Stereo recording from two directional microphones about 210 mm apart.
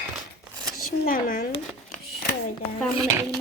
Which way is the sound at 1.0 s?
40° left (ahead or behind).